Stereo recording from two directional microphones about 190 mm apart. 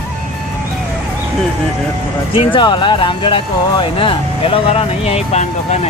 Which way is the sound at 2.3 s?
25° left (ahead or behind).